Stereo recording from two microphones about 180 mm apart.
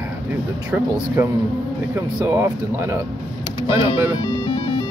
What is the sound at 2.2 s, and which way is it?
Speech, 15° right (ahead or behind).